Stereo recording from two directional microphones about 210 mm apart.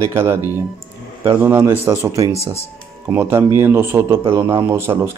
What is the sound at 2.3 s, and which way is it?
Speech, 30° left (ahead or behind).